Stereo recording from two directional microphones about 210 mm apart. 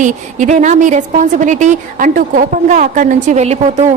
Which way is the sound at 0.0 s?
35° right (ahead or behind).